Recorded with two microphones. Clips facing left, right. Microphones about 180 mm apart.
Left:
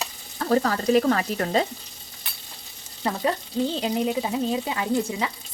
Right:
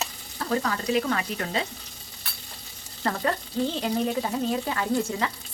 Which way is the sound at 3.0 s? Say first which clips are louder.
Left 2 dB; 15° left (ahead or behind).